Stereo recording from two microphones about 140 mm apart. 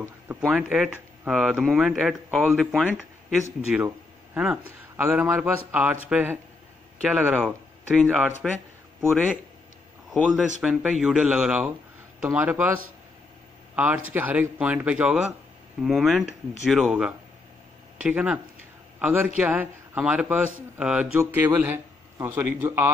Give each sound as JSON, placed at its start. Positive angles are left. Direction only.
{"t": 0.5, "sound": "speech", "side_deg": -10}
{"t": 3.7, "sound": "speech", "side_deg": -10}
{"t": 10.1, "sound": "a man's voice", "side_deg": 5}
{"t": 10.6, "sound": "speech", "side_deg": -10}
{"t": 13.7, "sound": "speech", "side_deg": -10}
{"t": 17.9, "sound": "speech", "side_deg": -10}